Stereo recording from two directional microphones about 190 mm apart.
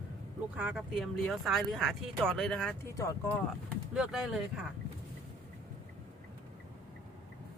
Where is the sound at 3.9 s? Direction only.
Centre (ahead or behind).